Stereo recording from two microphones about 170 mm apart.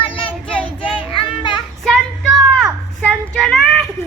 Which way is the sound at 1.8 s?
Centre (ahead or behind).